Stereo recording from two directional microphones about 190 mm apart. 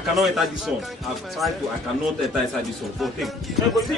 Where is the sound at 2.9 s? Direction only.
Centre (ahead or behind).